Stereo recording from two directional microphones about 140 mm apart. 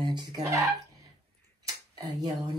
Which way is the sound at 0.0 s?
30° right (ahead or behind).